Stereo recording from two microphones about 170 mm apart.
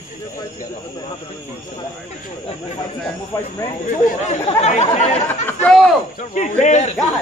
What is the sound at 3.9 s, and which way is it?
Speech, 40° left (ahead or behind).